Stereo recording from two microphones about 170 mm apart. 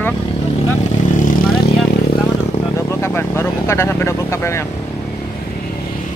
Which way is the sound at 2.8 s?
15° left (ahead or behind).